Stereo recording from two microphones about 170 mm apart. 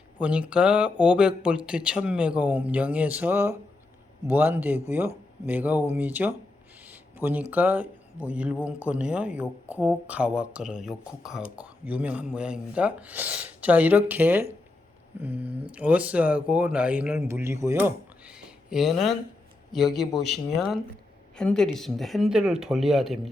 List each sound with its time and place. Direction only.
0.2 s speech: 5° right (ahead or behind)
6.8 s a sound: 10° right (ahead or behind)
7.5 s speech: 10° right (ahead or behind)
15.4 s speech: 35° right (ahead or behind)
15.7 s speech: 10° right (ahead or behind)